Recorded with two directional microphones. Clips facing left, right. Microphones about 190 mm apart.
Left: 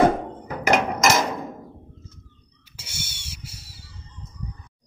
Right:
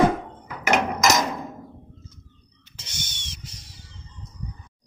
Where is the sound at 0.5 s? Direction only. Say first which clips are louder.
Left 3 dB; 35° left (ahead or behind).